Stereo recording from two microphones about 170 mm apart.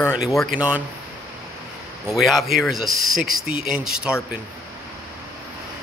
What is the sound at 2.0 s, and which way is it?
Speech, centre (ahead or behind).